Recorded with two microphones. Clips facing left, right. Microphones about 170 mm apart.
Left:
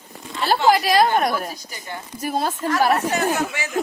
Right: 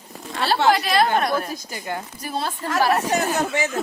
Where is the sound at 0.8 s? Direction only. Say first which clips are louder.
Left 2 dB; 40° left (ahead or behind).